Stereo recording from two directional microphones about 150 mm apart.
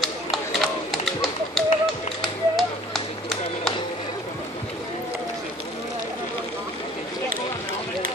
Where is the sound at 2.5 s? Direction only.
Centre (ahead or behind).